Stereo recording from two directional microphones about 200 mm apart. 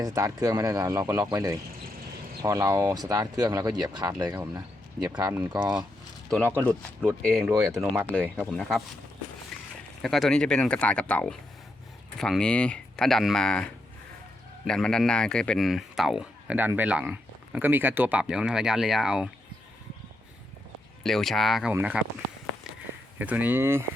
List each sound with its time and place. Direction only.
0.0 s speech: 15° right (ahead or behind)
7.2 s speech: 5° left (ahead or behind)
9.5 s a sound: centre (ahead or behind)
10.0 s speech: centre (ahead or behind)
14.7 s speech: 5° left (ahead or behind)
21.0 s speech: centre (ahead or behind)
23.1 s speech: 10° right (ahead or behind)